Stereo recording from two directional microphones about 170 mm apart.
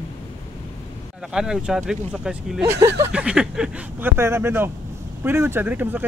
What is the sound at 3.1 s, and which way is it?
Speech, 5° right (ahead or behind).